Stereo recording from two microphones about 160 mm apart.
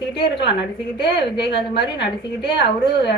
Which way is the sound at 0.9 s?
90° left.